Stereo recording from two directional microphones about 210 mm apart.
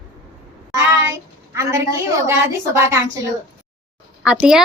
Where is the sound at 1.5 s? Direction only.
15° right (ahead or behind).